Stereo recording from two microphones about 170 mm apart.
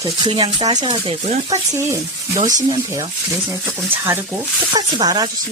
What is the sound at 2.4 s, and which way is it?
Speech, 45° right (ahead or behind).